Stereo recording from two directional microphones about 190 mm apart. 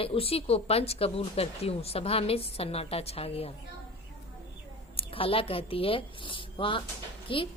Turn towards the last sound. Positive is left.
turn(degrees=25)  # may be behind; listen again after turning